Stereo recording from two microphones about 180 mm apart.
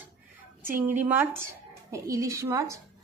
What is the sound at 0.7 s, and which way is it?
A woman's voice, 10° right (ahead or behind).